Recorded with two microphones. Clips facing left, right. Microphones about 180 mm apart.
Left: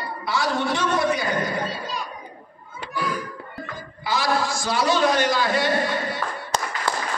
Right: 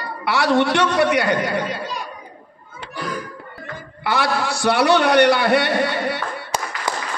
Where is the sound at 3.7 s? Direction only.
65° right (ahead or behind).